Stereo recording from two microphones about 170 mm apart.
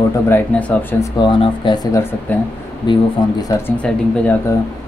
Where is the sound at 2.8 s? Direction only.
25° left (ahead or behind).